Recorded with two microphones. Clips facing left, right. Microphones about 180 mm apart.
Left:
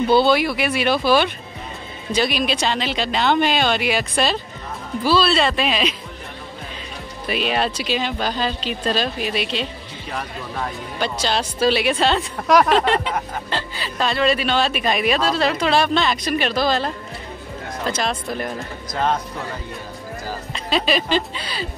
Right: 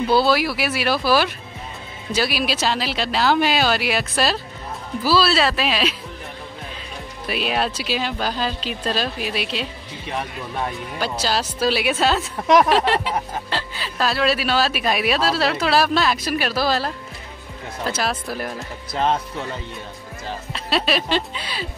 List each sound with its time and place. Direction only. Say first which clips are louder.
0.1 s speech: left 2 dB; centre (ahead or behind)
7.2 s speech: left 1 dB; 5° right (ahead or behind)
11.0 s speech: left 1 dB; 5° right (ahead or behind)
20.5 s speech: left 1 dB; centre (ahead or behind)